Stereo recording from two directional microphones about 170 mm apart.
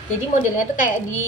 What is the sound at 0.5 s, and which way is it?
Speech, 50° left (ahead or behind).